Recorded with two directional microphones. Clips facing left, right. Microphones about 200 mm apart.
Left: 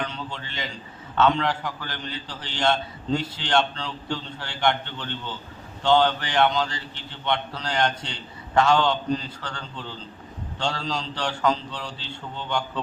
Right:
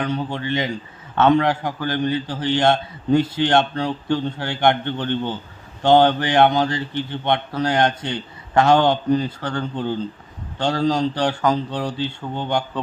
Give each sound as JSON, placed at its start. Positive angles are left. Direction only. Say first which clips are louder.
{"t": 0.2, "sound": "a man's voice", "louder": "right 11 dB", "side_deg": -55}